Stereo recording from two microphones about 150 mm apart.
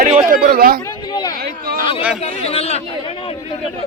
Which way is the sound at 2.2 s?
45° left (ahead or behind).